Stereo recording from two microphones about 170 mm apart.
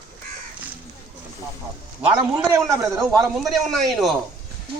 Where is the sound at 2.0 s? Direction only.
10° right (ahead or behind).